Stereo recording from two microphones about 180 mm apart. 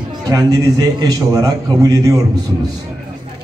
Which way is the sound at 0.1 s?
20° right (ahead or behind).